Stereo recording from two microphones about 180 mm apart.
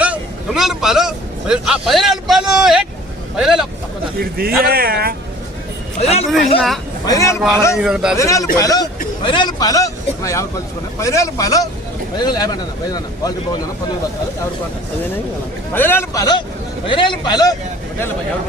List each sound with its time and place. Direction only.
0.0 s a man's voice: 5° right (ahead or behind)
4.2 s speech: 60° right (ahead or behind)
6.0 s speech: 35° left (ahead or behind)
7.0 s a man's voice: 20° left (ahead or behind)
7.8 s speech: 5° right (ahead or behind)
8.1 s a man's voice: 15° left (ahead or behind)
15.7 s a man's voice: 10° left (ahead or behind)